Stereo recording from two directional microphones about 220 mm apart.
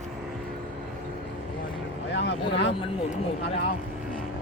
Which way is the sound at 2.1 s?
55° left (ahead or behind).